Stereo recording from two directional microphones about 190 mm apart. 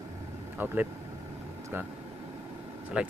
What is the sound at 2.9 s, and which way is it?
Speech, 5° right (ahead or behind).